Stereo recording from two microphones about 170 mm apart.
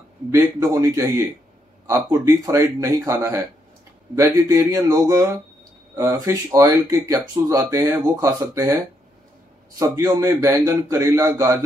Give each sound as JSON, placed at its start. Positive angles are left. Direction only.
{"t": 0.3, "sound": "a man's voice", "side_deg": -20}
{"t": 9.8, "sound": "a man's voice", "side_deg": -20}